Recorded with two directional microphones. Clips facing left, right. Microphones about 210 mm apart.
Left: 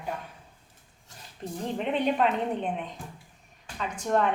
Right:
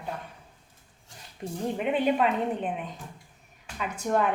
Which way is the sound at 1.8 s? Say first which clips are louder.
Right 1 dB; 5° right (ahead or behind).